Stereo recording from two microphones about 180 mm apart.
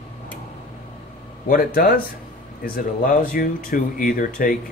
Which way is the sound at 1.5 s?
50° left (ahead or behind).